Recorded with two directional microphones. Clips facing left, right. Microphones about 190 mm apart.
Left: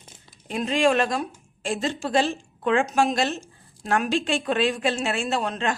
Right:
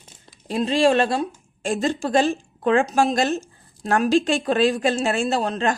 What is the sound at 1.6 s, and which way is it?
A woman's voice, 45° right (ahead or behind).